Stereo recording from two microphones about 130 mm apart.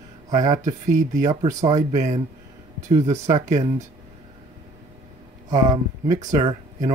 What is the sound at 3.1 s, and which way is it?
Speech, 60° right (ahead or behind).